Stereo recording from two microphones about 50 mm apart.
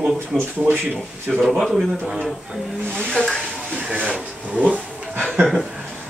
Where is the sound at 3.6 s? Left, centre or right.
Right.